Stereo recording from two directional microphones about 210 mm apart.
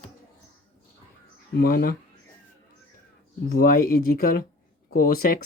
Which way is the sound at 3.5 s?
45° left (ahead or behind).